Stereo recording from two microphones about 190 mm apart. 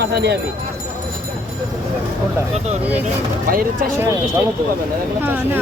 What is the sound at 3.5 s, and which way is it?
Speech, 50° right (ahead or behind).